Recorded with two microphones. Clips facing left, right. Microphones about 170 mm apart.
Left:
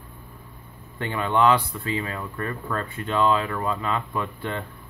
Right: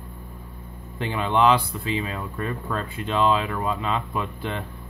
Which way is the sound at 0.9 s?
20° right (ahead or behind).